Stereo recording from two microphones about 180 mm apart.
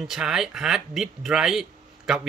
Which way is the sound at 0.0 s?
5° right (ahead or behind).